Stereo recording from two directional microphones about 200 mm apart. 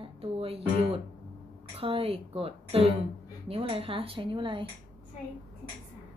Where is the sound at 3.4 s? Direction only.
30° right (ahead or behind).